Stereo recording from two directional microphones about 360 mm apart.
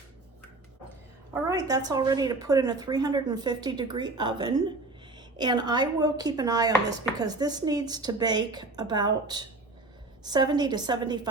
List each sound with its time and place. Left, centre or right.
1.3 s a woman's voice: centre